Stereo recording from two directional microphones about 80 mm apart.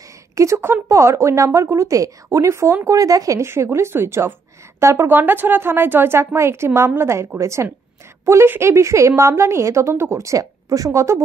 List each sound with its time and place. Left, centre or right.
0.4 s a woman's voice: right